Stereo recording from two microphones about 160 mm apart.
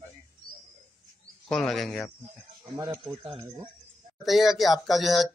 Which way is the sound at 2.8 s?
25° right (ahead or behind).